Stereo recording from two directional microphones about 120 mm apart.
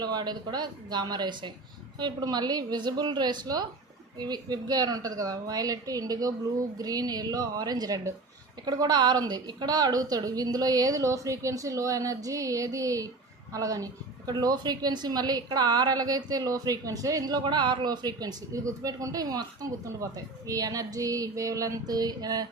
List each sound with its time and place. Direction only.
0.0 s a woman's voice: 35° right (ahead or behind)